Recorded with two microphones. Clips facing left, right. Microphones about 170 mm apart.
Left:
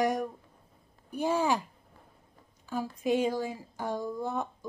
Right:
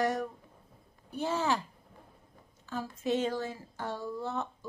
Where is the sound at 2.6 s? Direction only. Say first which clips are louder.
Left 3 dB; 10° left (ahead or behind).